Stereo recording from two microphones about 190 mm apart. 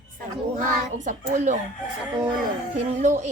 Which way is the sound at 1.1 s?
40° right (ahead or behind).